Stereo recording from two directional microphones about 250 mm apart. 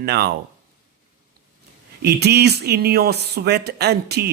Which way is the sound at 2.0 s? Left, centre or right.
Right.